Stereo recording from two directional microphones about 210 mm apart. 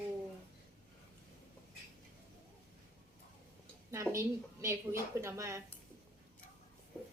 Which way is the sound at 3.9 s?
15° right (ahead or behind).